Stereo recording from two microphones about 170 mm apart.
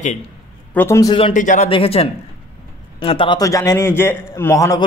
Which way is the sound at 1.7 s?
35° left (ahead or behind).